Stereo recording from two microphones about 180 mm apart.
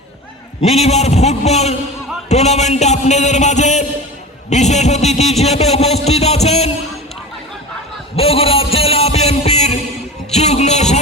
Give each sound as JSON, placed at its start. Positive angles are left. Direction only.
{"t": 0.6, "sound": "a man's voice", "side_deg": 35}
{"t": 8.1, "sound": "music", "side_deg": 35}